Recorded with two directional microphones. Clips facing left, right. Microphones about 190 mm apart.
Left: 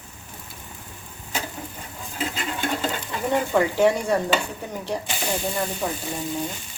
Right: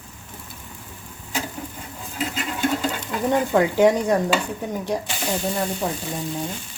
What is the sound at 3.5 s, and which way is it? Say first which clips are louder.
Speech: right 2 dB; 15° right (ahead or behind).